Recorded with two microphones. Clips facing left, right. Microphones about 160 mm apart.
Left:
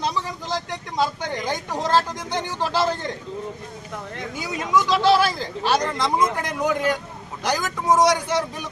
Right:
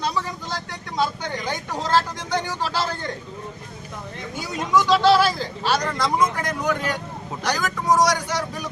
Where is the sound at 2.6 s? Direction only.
15° left (ahead or behind).